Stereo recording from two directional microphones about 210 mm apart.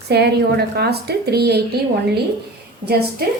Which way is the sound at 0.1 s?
50° right (ahead or behind).